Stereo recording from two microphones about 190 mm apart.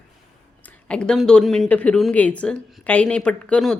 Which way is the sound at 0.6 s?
5° left (ahead or behind).